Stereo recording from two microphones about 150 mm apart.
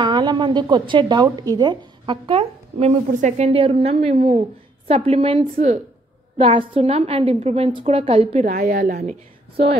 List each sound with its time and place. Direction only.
0.0 s a woman's voice: 30° right (ahead or behind)
3.1 s a woman's voice: 55° right (ahead or behind)
8.5 s a woman's voice: 70° right (ahead or behind)